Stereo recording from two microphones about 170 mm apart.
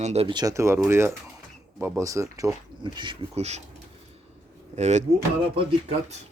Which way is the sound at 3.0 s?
35° right (ahead or behind).